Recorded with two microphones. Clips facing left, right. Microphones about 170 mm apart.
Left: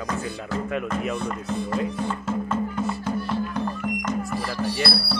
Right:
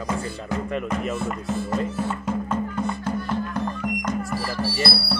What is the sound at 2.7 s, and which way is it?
Music, 5° left (ahead or behind).